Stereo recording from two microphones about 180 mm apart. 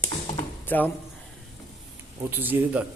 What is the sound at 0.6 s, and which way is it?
Speech, 10° left (ahead or behind).